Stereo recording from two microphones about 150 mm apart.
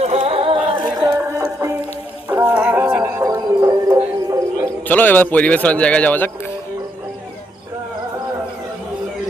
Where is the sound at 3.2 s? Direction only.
20° right (ahead or behind).